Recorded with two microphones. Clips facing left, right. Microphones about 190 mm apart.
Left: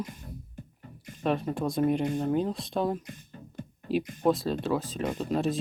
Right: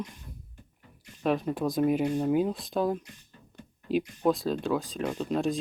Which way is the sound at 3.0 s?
55° left (ahead or behind).